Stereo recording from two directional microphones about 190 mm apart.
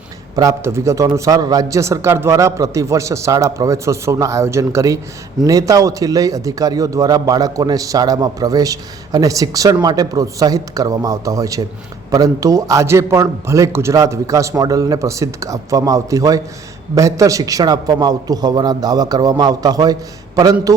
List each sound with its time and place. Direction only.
0.3 s a man's voice: 15° right (ahead or behind)